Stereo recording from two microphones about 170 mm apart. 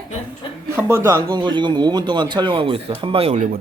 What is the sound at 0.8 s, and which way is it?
Speech, 15° right (ahead or behind).